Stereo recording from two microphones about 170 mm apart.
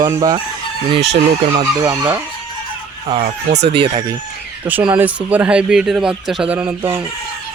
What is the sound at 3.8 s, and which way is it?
Speech, 25° right (ahead or behind).